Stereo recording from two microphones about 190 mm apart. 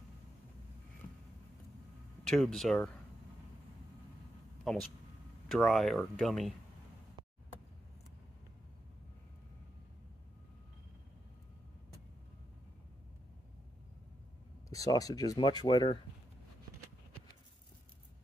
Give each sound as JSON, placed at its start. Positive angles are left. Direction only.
{"t": 2.2, "sound": "speech", "side_deg": 0}
{"t": 4.7, "sound": "speech", "side_deg": 0}
{"t": 14.7, "sound": "speech", "side_deg": 20}